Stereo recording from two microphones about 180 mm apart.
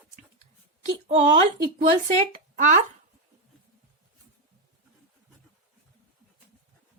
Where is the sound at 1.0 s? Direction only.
40° right (ahead or behind).